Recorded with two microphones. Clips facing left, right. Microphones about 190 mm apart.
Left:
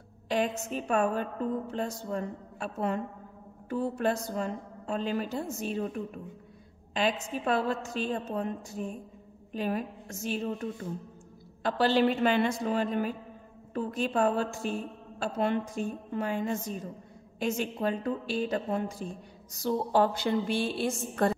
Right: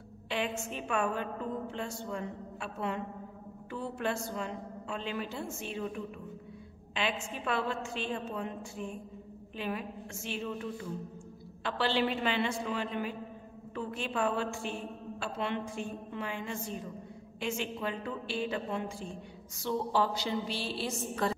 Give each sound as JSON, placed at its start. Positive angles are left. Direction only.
{"t": 0.3, "sound": "a woman's voice", "side_deg": 40}